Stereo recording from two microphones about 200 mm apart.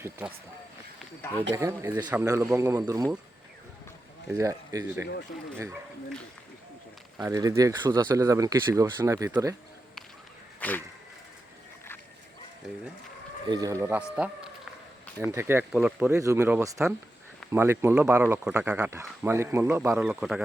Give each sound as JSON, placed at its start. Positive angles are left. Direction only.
{"t": 0.0, "sound": "speech", "side_deg": -10}
{"t": 1.5, "sound": "speech", "side_deg": -15}
{"t": 4.3, "sound": "speech", "side_deg": -15}
{"t": 7.2, "sound": "speech", "side_deg": -15}
{"t": 10.6, "sound": "a sound", "side_deg": 10}
{"t": 13.5, "sound": "speech", "side_deg": -20}
{"t": 19.9, "sound": "speech", "side_deg": -5}